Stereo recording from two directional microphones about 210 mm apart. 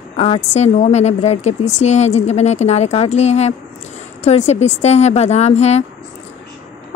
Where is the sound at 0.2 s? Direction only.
30° left (ahead or behind).